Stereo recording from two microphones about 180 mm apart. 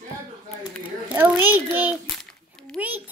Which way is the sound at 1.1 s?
10° right (ahead or behind).